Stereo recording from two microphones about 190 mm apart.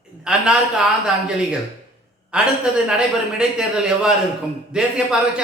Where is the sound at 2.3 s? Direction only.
5° right (ahead or behind).